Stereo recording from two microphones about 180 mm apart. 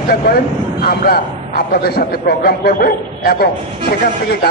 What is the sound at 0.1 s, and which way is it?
A man's voice, 55° left (ahead or behind).